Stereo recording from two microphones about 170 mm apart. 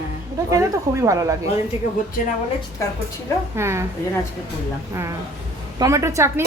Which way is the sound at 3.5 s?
15° right (ahead or behind).